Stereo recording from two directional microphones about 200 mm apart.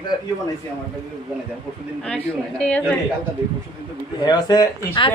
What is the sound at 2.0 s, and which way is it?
Speech, 5° left (ahead or behind).